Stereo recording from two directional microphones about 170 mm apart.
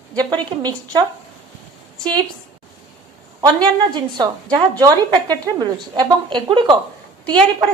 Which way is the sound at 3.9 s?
25° right (ahead or behind).